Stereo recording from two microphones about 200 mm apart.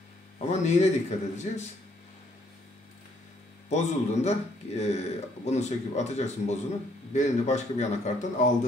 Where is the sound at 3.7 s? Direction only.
35° left (ahead or behind).